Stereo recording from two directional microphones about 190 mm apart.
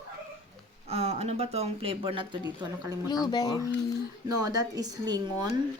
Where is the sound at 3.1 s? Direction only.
20° left (ahead or behind).